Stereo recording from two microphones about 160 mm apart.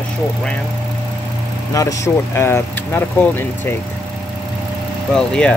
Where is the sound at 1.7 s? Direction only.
20° left (ahead or behind).